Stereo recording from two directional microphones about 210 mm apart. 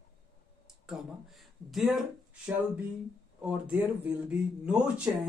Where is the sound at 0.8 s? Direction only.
Centre (ahead or behind).